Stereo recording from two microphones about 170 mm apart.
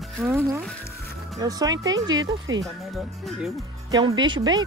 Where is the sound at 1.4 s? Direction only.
20° right (ahead or behind).